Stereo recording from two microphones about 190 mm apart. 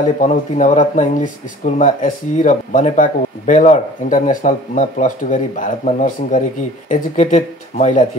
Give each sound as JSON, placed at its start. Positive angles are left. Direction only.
{"t": 0.0, "sound": "speech", "side_deg": 40}